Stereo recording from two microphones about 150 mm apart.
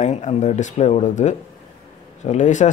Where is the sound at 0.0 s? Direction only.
50° left (ahead or behind).